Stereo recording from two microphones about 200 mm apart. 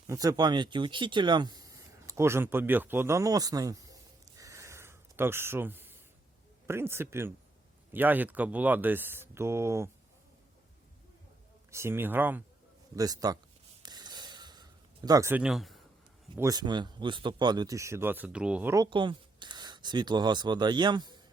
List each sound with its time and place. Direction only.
0.1 s speech: 20° right (ahead or behind)
4.4 s a sound: 15° right (ahead or behind)
6.7 s speech: 10° right (ahead or behind)
11.7 s speech: 15° right (ahead or behind)
13.8 s a sound: 20° right (ahead or behind); by 15.8 s centre (ahead or behind)
16.4 s speech: 20° right (ahead or behind)